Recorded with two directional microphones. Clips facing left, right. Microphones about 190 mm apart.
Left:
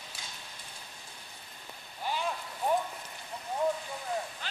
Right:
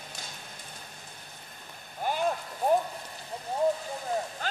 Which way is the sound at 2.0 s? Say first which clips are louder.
Right 5 dB; 50° right (ahead or behind).